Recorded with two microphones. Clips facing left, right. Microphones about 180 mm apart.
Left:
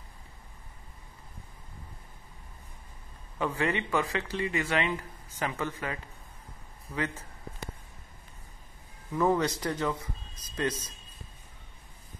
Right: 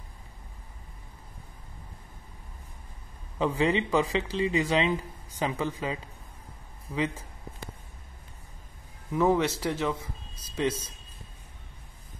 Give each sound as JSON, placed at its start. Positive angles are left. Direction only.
{"t": 3.3, "sound": "speech", "side_deg": -15}
{"t": 9.2, "sound": "speech", "side_deg": -5}
{"t": 10.0, "sound": "a sound", "side_deg": -10}